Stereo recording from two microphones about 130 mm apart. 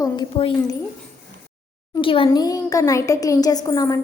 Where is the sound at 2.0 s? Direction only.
40° left (ahead or behind).